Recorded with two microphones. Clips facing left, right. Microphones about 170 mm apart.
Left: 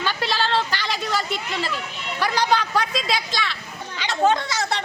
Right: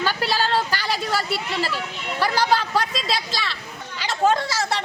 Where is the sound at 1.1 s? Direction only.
5° right (ahead or behind).